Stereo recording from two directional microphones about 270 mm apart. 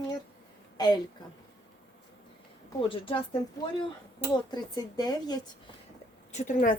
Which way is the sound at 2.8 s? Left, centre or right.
Centre.